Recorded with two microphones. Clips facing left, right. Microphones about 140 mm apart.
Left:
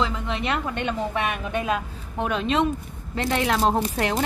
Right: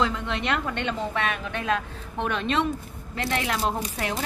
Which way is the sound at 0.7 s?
15° left (ahead or behind).